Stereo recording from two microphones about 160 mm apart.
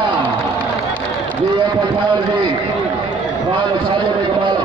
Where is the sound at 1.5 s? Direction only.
30° right (ahead or behind).